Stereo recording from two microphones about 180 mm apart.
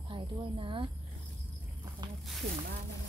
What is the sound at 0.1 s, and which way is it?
Speech, 30° right (ahead or behind).